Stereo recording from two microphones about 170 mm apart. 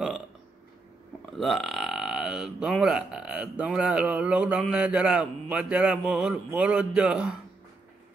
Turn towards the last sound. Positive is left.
turn(degrees=-5)  # may be behind; listen again after turning